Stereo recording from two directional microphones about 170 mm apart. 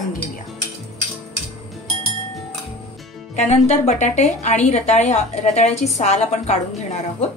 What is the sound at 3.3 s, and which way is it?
A woman's voice, 40° left (ahead or behind).